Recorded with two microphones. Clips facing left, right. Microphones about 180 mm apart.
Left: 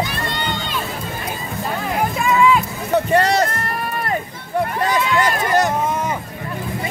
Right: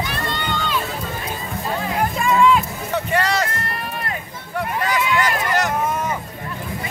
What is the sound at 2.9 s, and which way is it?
Run, 35° left (ahead or behind).